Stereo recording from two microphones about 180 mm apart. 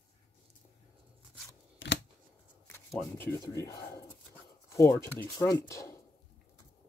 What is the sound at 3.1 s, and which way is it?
Speech, 15° left (ahead or behind).